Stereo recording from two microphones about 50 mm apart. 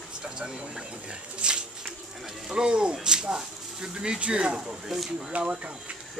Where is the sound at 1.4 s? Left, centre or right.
Centre.